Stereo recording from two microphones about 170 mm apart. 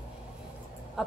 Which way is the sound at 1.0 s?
Centre (ahead or behind).